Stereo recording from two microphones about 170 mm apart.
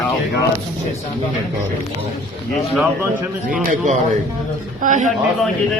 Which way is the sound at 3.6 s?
55° right (ahead or behind).